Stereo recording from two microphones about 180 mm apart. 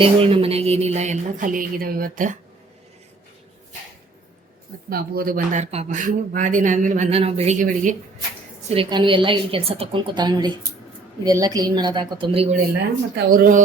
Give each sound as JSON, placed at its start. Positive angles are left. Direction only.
{"t": 0.0, "sound": "speech", "side_deg": -30}
{"t": 4.9, "sound": "speech", "side_deg": -55}
{"t": 8.7, "sound": "a woman's voice", "side_deg": -30}
{"t": 13.1, "sound": "speech", "side_deg": -55}